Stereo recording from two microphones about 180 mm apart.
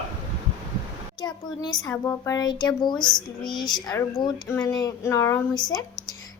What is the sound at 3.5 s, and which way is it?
Speech, 25° left (ahead or behind).